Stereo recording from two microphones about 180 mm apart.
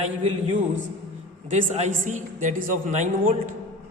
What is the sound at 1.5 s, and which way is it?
A man's voice, 40° right (ahead or behind).